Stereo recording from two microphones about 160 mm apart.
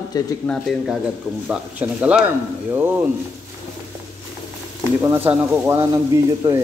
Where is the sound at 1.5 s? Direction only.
10° right (ahead or behind).